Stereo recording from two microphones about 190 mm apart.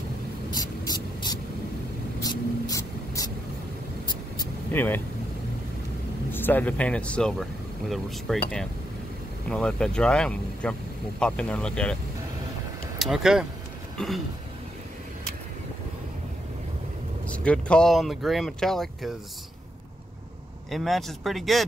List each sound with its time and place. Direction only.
0.5 s vehicle: 20° left (ahead or behind)
4.7 s speech: 10° left (ahead or behind)
6.3 s speech: 10° left (ahead or behind)
13.0 s speech: centre (ahead or behind)
13.9 s throat clearing: centre (ahead or behind)
17.3 s speech: 5° left (ahead or behind)
20.7 s speech: centre (ahead or behind)